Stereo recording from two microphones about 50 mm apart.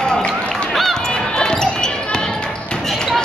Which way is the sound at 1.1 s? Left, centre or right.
Centre.